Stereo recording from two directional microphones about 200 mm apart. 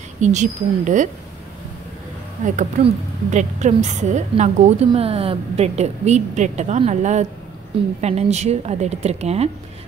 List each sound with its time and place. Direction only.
0.2 s a woman's voice: 35° right (ahead or behind)
2.4 s a woman's voice: 40° right (ahead or behind)